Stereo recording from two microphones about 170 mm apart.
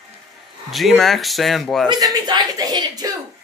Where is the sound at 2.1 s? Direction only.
20° right (ahead or behind).